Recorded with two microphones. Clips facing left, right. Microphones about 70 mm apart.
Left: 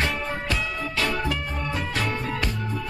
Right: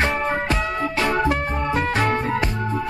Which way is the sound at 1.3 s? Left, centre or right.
Right.